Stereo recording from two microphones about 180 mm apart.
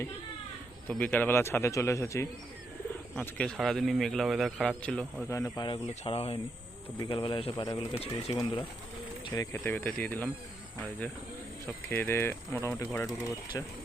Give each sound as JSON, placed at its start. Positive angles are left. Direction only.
{"t": 0.9, "sound": "speech", "side_deg": 10}
{"t": 3.2, "sound": "speech", "side_deg": 5}
{"t": 5.3, "sound": "speech", "side_deg": 20}
{"t": 11.6, "sound": "speech", "side_deg": 10}